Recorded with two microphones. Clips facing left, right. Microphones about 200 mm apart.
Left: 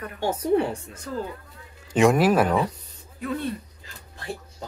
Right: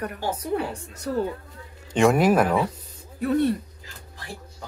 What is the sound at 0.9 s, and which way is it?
Speech, 75° right (ahead or behind).